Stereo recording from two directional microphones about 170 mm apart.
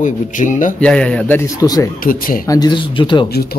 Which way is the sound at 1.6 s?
20° left (ahead or behind).